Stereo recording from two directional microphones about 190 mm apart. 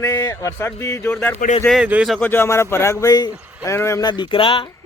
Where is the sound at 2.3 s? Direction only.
15° left (ahead or behind).